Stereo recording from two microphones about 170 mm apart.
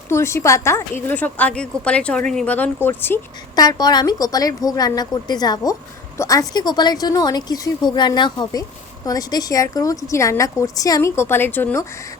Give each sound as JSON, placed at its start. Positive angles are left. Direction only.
{"t": 0.1, "sound": "a woman's voice", "side_deg": 15}
{"t": 3.5, "sound": "a woman's voice", "side_deg": 25}